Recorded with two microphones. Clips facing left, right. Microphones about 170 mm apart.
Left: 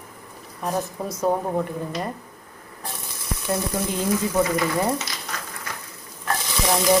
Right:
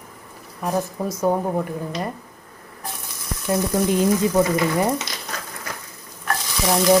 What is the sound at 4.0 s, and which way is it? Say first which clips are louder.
Speech: right 1 dB; 20° right (ahead or behind).